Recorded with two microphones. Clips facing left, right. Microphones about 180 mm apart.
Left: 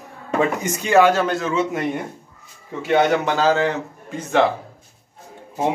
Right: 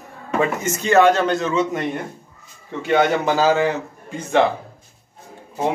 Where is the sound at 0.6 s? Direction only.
15° left (ahead or behind).